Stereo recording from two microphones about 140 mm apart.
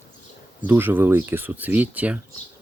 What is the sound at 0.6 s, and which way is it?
Speech, 15° right (ahead or behind).